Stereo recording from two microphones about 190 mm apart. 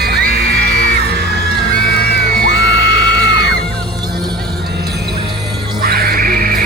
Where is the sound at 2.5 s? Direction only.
65° left (ahead or behind).